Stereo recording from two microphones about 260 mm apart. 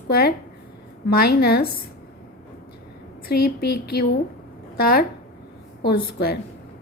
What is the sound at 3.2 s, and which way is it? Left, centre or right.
A woman's voice, left.